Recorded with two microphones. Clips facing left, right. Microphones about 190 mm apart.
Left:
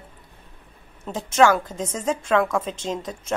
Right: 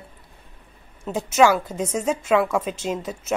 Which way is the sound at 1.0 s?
10° right (ahead or behind).